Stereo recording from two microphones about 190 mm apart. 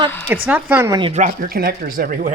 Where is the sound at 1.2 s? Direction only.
45° right (ahead or behind).